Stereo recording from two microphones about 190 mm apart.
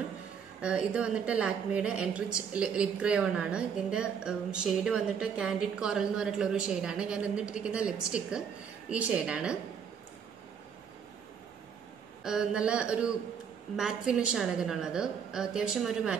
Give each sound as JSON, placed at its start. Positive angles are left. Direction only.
{"t": 0.6, "sound": "a woman's voice", "side_deg": -5}
{"t": 12.2, "sound": "a woman's voice", "side_deg": -5}